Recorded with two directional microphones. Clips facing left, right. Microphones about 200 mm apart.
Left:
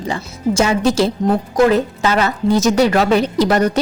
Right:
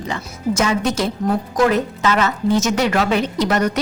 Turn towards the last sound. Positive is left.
turn(degrees=30)  # may be behind; listen again after turning